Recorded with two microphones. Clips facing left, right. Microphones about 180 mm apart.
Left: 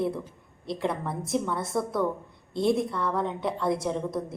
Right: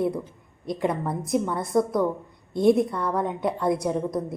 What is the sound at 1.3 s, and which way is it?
A woman's voice, 15° right (ahead or behind).